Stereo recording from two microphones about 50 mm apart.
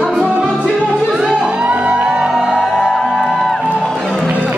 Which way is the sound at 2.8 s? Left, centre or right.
Centre.